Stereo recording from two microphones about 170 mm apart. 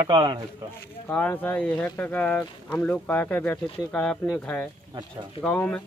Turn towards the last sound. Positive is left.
turn(degrees=10)  # may be behind; listen again after turning